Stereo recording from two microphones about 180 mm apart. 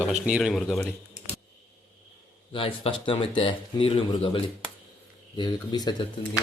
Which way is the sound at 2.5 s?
30° left (ahead or behind).